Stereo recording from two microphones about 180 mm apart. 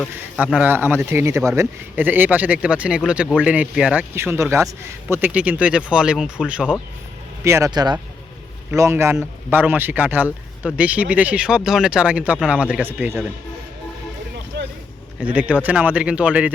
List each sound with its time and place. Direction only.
0.0 s a man's voice: 5° right (ahead or behind)
7.4 s a man's voice: 15° right (ahead or behind)
14.5 s vehicle: 70° right (ahead or behind)
15.2 s a man's voice: 10° right (ahead or behind)